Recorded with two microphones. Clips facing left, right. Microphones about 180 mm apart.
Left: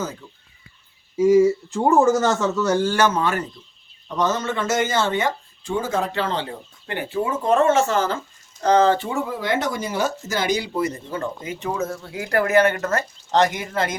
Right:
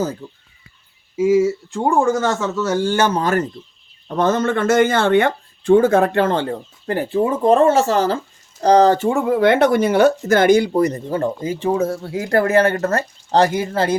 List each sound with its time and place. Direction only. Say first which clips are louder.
0.2 s speech: right 8 dB; 35° right (ahead or behind)
1.1 s speech: even; 5° right (ahead or behind)
2.8 s speech: right 2 dB; 25° right (ahead or behind)
4.1 s speech: right 5 dB; 55° right (ahead or behind); by 13.9 s 30° right (ahead or behind)